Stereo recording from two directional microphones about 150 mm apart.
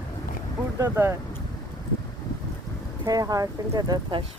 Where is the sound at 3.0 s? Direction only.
25° right (ahead or behind).